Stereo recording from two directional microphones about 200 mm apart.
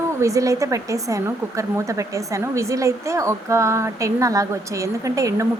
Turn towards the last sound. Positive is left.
turn(degrees=-15)  # may be behind; listen again after turning